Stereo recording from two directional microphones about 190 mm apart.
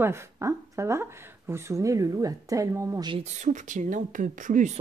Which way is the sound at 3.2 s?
40° right (ahead or behind).